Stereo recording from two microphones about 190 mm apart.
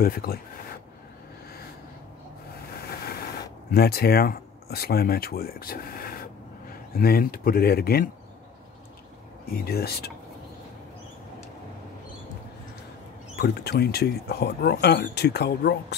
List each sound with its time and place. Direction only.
0.0 s speech: 50° left (ahead or behind)
3.7 s speech: 55° left (ahead or behind)
9.5 s speech: 55° left (ahead or behind)
13.4 s speech: 60° left (ahead or behind)